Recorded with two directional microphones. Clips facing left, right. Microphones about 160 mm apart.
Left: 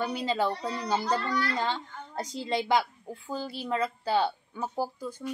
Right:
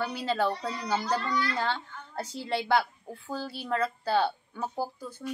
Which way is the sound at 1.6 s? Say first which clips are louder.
Even; 15° left (ahead or behind).